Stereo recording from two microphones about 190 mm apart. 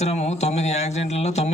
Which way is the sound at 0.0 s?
35° left (ahead or behind).